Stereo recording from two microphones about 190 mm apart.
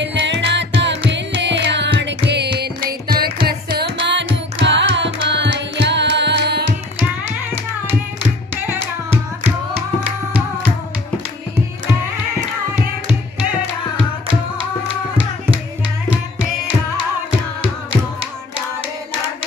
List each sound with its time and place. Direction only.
0.0 s music: 70° right (ahead or behind)